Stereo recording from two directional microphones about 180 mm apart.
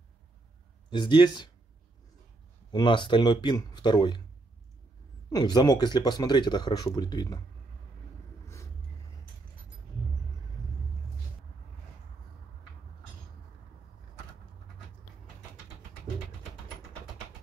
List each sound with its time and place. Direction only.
0.8 s speech: 25° left (ahead or behind)
2.7 s speech: 25° left (ahead or behind)
5.3 s speech: 20° left (ahead or behind)